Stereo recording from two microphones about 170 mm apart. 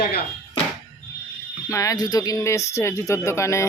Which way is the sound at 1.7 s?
20° left (ahead or behind).